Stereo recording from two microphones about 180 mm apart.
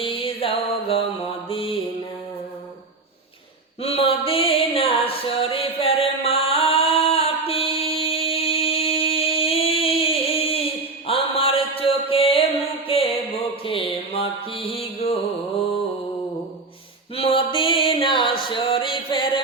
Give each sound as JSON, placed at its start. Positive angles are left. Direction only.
{"t": 0.0, "sound": "music", "side_deg": 30}
{"t": 1.5, "sound": "mantra", "side_deg": 30}
{"t": 3.8, "sound": "a sound", "side_deg": 35}
{"t": 13.7, "sound": "mantra", "side_deg": 30}
{"t": 17.2, "sound": "music", "side_deg": 30}